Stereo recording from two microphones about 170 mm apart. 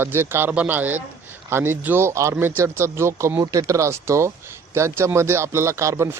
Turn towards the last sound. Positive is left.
turn(degrees=-15)  # may be behind; listen again after turning